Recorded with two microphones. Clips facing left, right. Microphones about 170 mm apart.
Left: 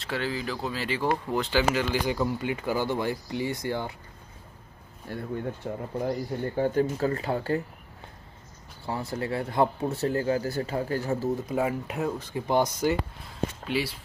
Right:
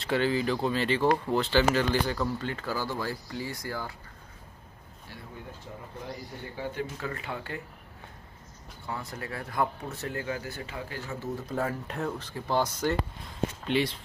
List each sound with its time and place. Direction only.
0.0 s speech: centre (ahead or behind); by 3.9 s 25° left (ahead or behind)
5.1 s speech: 60° left (ahead or behind); by 7.6 s 35° left (ahead or behind)
8.8 s speech: 30° left (ahead or behind)
11.4 s speech: 10° left (ahead or behind)